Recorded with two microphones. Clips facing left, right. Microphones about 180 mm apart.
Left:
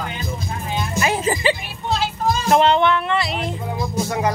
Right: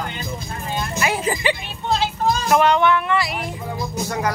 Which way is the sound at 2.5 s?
25° left (ahead or behind).